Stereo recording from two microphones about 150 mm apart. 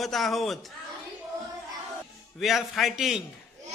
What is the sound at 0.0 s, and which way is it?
Speech, centre (ahead or behind).